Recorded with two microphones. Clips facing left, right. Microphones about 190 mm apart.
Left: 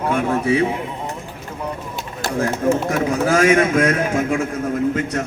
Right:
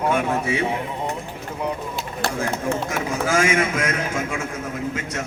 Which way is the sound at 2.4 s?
40° left (ahead or behind).